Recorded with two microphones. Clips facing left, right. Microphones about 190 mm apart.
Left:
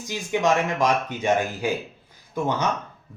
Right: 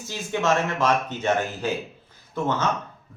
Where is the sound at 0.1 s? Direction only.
15° left (ahead or behind).